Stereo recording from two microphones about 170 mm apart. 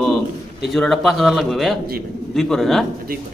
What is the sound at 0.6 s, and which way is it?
Speech, centre (ahead or behind).